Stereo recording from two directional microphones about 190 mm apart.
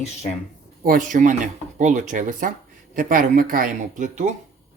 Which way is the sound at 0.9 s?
45° right (ahead or behind).